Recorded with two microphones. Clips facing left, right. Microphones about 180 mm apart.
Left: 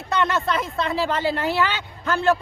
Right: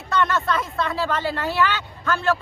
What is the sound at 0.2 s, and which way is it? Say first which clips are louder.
A man's voice: right 1 dB; 20° left (ahead or behind).